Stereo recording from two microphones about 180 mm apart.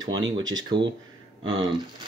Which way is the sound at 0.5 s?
25° right (ahead or behind).